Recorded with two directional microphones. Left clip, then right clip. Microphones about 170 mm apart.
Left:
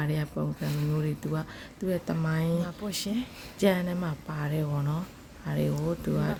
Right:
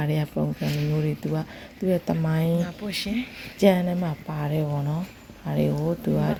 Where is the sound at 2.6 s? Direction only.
15° left (ahead or behind).